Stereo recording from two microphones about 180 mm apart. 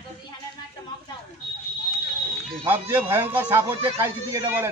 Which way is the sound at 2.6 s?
10° right (ahead or behind).